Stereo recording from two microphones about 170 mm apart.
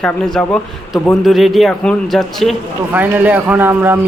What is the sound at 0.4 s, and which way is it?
A man's voice, 5° left (ahead or behind).